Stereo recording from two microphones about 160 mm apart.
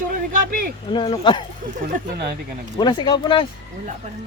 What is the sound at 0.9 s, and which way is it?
Speech, 35° left (ahead or behind).